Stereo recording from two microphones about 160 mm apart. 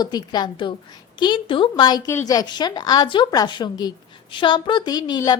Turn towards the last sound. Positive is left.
turn(degrees=25)  # may be behind; listen again after turning